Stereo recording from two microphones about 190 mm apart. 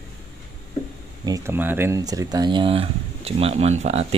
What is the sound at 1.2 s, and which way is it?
Speech, 15° right (ahead or behind).